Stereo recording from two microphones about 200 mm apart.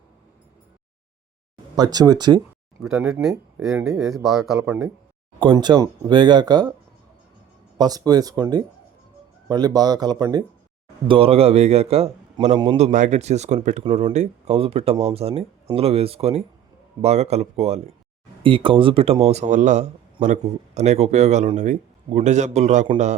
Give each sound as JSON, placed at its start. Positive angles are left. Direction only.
{"t": 1.7, "sound": "speech", "side_deg": -20}
{"t": 2.8, "sound": "speech", "side_deg": 0}
{"t": 5.4, "sound": "speech", "side_deg": -25}
{"t": 7.8, "sound": "a man's voice", "side_deg": -20}